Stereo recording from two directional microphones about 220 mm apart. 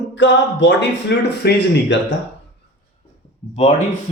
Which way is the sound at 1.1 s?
50° left (ahead or behind).